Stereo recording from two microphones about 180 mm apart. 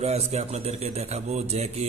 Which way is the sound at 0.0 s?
35° right (ahead or behind).